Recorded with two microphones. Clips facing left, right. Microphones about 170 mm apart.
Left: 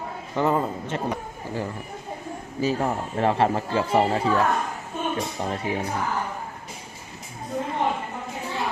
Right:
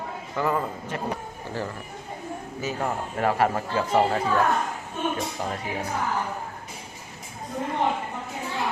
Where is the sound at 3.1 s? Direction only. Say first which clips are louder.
Left 1 dB; 30° left (ahead or behind).